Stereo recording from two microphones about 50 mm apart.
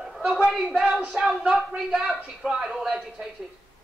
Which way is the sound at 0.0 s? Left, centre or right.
Centre.